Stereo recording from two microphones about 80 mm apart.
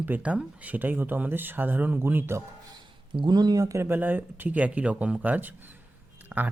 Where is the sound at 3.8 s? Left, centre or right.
Right.